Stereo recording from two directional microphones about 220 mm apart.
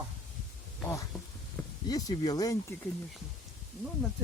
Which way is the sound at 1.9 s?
15° left (ahead or behind).